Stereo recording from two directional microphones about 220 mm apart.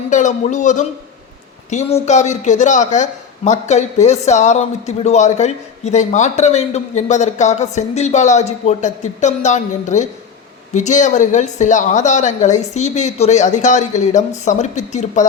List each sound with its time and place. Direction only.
0.1 s speech: 35° left (ahead or behind)